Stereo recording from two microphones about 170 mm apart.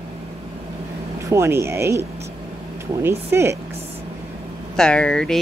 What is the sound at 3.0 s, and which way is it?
Speech, 15° right (ahead or behind).